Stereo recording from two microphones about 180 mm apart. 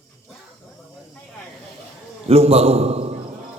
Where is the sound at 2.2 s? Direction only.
35° right (ahead or behind).